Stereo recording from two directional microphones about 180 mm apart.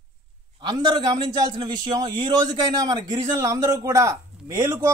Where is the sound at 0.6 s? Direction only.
25° right (ahead or behind).